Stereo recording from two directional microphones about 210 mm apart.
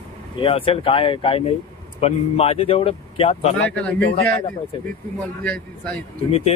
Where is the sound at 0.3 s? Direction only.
25° left (ahead or behind).